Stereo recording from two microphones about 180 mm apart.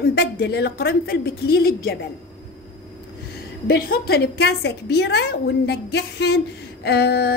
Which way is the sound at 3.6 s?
55° left (ahead or behind).